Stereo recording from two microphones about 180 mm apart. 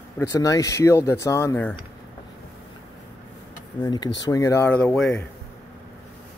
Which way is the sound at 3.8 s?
25° left (ahead or behind).